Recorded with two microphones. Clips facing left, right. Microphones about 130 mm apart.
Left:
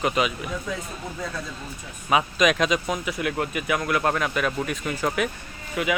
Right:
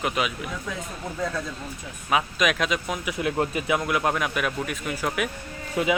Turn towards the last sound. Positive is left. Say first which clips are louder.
# right 2 dB
turn(degrees=-25)  # may be behind; listen again after turning